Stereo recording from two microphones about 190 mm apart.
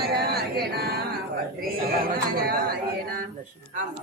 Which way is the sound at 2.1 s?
50° right (ahead or behind).